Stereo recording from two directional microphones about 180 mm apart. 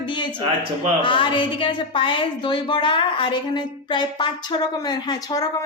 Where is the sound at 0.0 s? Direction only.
25° left (ahead or behind).